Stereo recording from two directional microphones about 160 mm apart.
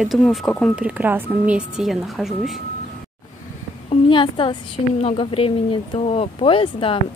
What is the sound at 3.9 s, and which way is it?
A woman's voice, 30° left (ahead or behind).